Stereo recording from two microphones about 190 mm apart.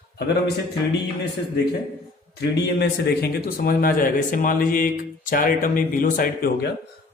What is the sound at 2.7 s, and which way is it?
Speech, 55° left (ahead or behind).